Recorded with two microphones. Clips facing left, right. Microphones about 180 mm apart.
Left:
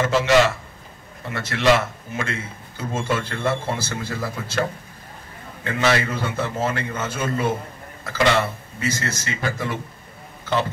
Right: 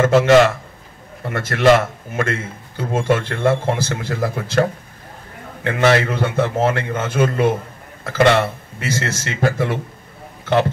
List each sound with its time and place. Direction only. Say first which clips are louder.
0.0 s a man's voice: right 6 dB; 50° right (ahead or behind)